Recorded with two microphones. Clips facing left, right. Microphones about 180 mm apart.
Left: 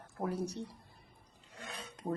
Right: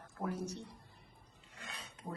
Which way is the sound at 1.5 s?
40° left (ahead or behind).